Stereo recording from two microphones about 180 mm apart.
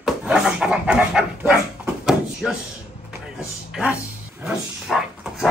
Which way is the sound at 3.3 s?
5° right (ahead or behind).